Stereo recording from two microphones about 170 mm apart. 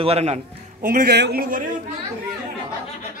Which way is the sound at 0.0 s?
40° right (ahead or behind).